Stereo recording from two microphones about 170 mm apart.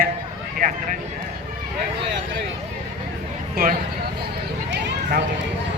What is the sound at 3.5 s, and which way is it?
Speech, 55° right (ahead or behind).